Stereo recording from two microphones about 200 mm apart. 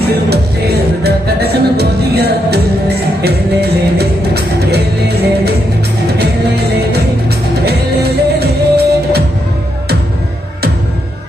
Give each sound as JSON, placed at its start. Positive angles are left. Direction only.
{"t": 0.3, "sound": "music", "side_deg": -50}
{"t": 7.3, "sound": "music", "side_deg": -55}